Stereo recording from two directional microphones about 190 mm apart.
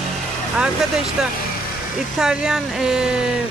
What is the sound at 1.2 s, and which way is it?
Speech, centre (ahead or behind).